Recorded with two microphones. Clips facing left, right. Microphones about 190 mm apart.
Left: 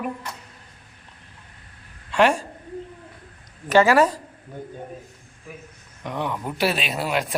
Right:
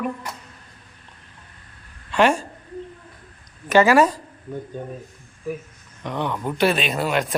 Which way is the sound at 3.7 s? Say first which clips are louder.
Right 1 dB; 15° right (ahead or behind).